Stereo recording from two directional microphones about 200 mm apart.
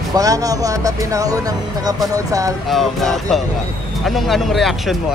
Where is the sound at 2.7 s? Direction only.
Centre (ahead or behind).